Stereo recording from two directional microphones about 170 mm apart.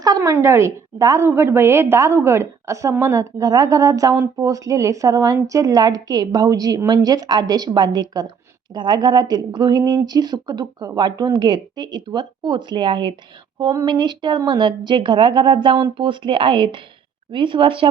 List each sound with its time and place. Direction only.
0.0 s a woman's voice: 20° right (ahead or behind)